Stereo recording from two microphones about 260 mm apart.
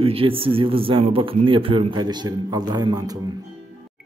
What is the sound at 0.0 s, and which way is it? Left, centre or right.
Speech, right.